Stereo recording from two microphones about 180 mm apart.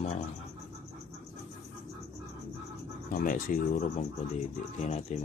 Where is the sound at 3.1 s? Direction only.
50° left (ahead or behind).